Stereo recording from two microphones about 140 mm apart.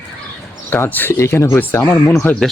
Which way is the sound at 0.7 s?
15° left (ahead or behind).